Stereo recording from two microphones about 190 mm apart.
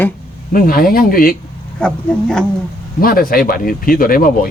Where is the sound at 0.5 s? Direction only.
50° left (ahead or behind).